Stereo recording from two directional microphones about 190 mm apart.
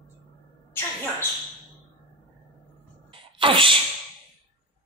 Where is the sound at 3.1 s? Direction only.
25° right (ahead or behind).